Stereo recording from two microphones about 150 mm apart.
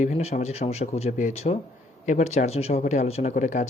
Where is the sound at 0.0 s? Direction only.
50° left (ahead or behind).